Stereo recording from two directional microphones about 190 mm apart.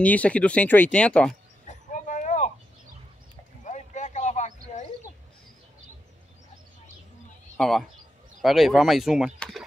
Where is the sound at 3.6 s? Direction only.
40° left (ahead or behind).